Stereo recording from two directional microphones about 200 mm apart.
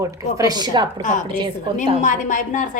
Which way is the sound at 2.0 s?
40° left (ahead or behind).